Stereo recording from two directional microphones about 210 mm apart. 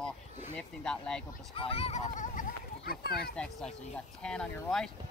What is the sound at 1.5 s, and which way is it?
Speech, 25° left (ahead or behind).